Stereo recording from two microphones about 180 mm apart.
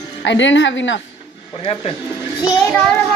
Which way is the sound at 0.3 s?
90° left.